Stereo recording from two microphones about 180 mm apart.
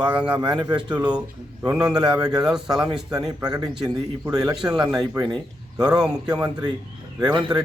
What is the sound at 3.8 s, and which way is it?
Speech, 20° right (ahead or behind).